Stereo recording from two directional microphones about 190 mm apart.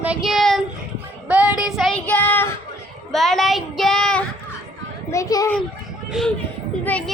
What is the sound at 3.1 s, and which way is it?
Speech, centre (ahead or behind).